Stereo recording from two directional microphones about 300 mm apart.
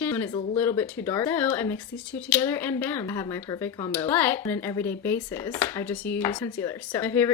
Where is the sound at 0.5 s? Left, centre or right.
Centre.